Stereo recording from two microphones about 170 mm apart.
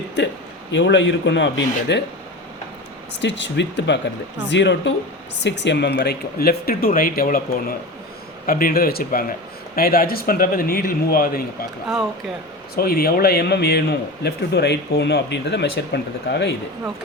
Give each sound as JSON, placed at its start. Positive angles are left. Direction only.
{"t": 0.7, "sound": "speech", "side_deg": 90}
{"t": 3.2, "sound": "a man's voice", "side_deg": 90}
{"t": 12.7, "sound": "a man's voice", "side_deg": 60}